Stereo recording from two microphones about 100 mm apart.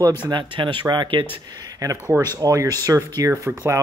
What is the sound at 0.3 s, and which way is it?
Speech, 50° right (ahead or behind).